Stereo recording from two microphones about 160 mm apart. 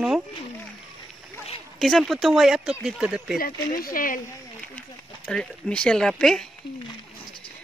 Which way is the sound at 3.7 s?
65° left (ahead or behind).